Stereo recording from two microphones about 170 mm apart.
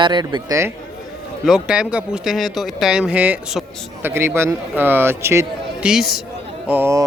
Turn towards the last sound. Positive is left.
turn(degrees=-10)  # may be behind; listen again after turning